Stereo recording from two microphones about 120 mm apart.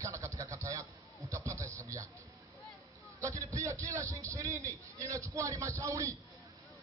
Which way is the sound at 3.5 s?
25° right (ahead or behind).